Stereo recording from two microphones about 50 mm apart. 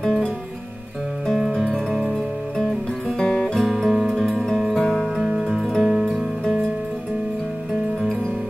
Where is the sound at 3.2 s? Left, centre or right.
Centre.